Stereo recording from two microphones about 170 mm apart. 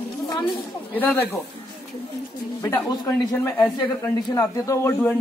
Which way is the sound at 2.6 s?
20° left (ahead or behind).